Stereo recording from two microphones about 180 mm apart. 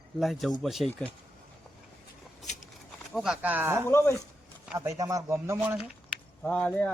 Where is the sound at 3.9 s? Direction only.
15° left (ahead or behind).